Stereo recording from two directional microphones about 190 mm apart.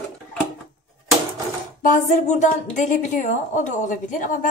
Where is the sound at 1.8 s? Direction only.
45° left (ahead or behind).